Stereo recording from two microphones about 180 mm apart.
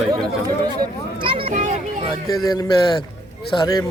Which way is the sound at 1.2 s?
30° right (ahead or behind).